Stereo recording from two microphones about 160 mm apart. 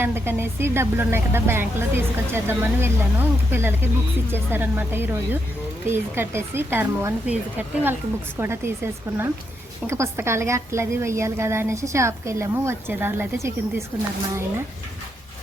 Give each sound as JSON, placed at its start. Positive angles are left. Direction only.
{"t": 0.0, "sound": "a woman's voice", "side_deg": -15}